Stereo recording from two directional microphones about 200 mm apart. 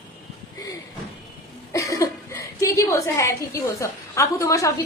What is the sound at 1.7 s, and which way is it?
A woman's voice, 15° left (ahead or behind).